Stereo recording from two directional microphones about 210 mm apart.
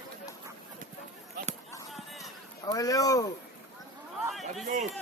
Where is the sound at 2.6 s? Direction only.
15° left (ahead or behind).